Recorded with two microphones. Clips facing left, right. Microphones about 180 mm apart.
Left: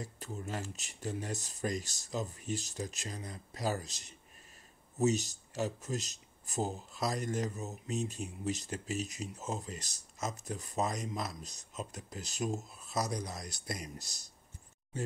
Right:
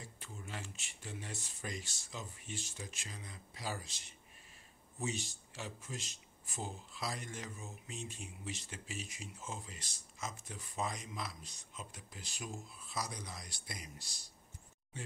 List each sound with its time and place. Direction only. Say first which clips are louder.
0.0 s speech: left 9 dB; 40° left (ahead or behind)